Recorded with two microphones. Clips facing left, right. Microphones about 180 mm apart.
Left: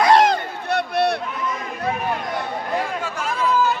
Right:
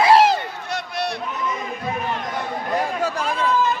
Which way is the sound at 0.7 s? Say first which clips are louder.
Left 7 dB; 60° left (ahead or behind).